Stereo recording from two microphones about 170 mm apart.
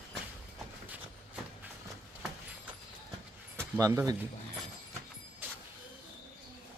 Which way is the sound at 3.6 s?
15° right (ahead or behind).